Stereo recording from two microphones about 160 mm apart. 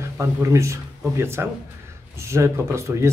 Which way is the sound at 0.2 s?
20° right (ahead or behind).